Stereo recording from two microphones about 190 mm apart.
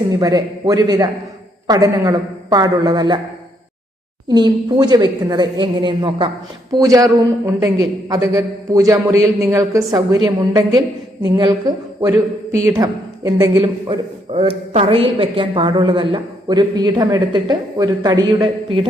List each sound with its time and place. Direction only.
0.1 s a man's voice: 20° right (ahead or behind)
4.3 s a man's voice: 20° right (ahead or behind)